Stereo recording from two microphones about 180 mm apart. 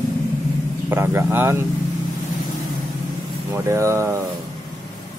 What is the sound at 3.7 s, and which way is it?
Speech, 15° right (ahead or behind).